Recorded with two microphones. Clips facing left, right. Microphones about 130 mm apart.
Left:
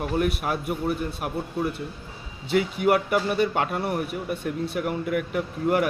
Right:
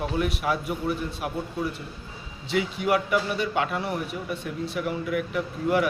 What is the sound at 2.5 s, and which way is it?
A man's voice, 50° left (ahead or behind).